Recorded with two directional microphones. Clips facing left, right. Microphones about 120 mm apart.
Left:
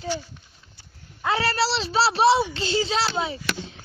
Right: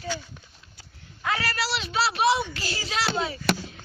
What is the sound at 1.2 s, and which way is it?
A woman's voice, 30° left (ahead or behind).